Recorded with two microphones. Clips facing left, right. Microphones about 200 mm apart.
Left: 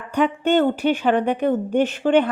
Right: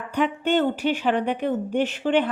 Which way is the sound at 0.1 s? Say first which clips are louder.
Left 4 dB; 45° left (ahead or behind).